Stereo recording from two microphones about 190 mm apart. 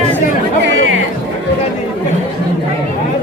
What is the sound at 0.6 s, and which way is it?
Chatter, 90° right.